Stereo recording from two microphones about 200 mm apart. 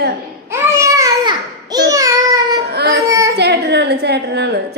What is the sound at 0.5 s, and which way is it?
Baby cry, 15° right (ahead or behind).